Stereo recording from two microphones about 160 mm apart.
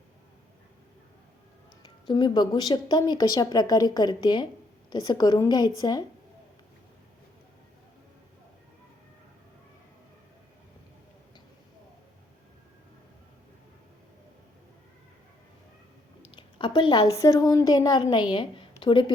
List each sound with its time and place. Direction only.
1.8 s speech: 30° left (ahead or behind)
16.3 s a woman's voice: 30° left (ahead or behind)